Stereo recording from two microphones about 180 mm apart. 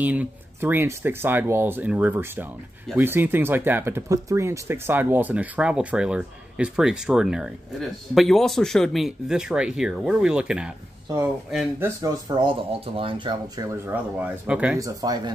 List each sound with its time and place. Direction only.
0.0 s speech: 10° right (ahead or behind)
12.4 s speech: 30° right (ahead or behind); by 14.8 s 5° right (ahead or behind)
14.8 s speech: 20° right (ahead or behind)